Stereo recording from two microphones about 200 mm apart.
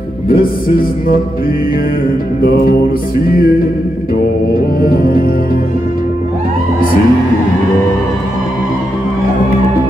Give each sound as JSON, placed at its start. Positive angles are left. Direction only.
{"t": 0.3, "sound": "music", "side_deg": 45}
{"t": 3.3, "sound": "music", "side_deg": 45}
{"t": 4.8, "sound": "music", "side_deg": 45}